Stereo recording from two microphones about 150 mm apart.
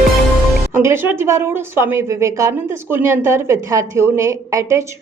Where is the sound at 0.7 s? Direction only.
15° right (ahead or behind).